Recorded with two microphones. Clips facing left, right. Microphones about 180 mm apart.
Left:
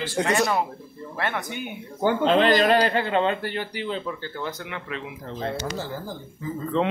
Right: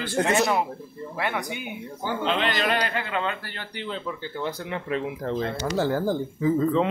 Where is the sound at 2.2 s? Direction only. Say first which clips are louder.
Left 6 dB; 40° left (ahead or behind); by 3.6 s 20° left (ahead or behind).